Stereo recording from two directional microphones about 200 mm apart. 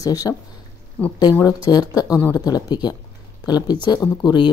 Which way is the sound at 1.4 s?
20° left (ahead or behind).